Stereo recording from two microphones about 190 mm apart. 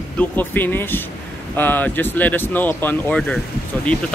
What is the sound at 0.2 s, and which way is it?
Speech, 10° left (ahead or behind).